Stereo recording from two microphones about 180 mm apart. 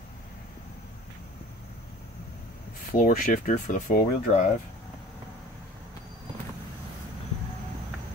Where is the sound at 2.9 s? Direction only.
50° left (ahead or behind).